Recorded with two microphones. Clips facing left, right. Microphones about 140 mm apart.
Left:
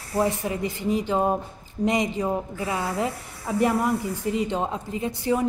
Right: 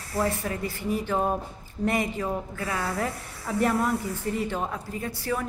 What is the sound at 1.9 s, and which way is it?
A woman's voice, 15° left (ahead or behind).